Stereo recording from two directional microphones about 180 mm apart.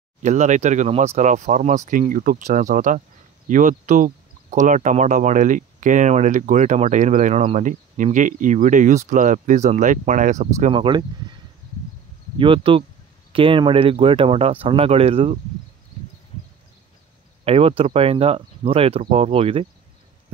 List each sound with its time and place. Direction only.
0.2 s speech: 40° right (ahead or behind)
10.7 s speech: 25° right (ahead or behind)
12.4 s speech: 30° right (ahead or behind)
17.5 s speech: 30° right (ahead or behind)